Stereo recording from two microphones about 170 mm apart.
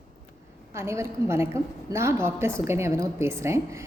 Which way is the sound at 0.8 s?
15° right (ahead or behind).